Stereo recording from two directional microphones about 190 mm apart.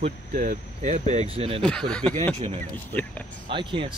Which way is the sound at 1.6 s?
5° left (ahead or behind).